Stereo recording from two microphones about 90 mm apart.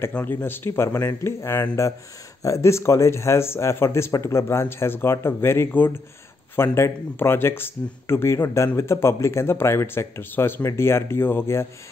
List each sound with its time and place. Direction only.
0.2 s speech: 25° left (ahead or behind)